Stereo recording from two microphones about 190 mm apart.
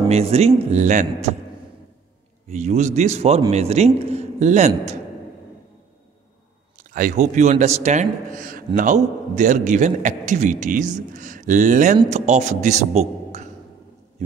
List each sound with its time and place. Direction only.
0.1 s a man's voice: 35° right (ahead or behind)
2.5 s a man's voice: 35° right (ahead or behind)
6.8 s a man's voice: 45° right (ahead or behind)